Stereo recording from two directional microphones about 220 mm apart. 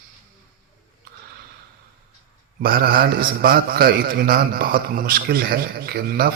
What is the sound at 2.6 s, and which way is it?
A man's voice, 40° right (ahead or behind).